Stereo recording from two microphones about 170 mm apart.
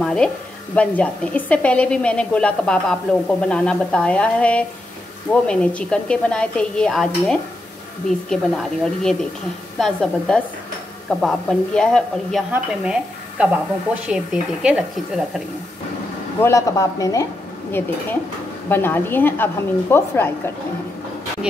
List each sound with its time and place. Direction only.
0.0 s a sound: 5° left (ahead or behind)
0.7 s a woman's voice: 5° left (ahead or behind)
16.3 s a woman's voice: 15° left (ahead or behind)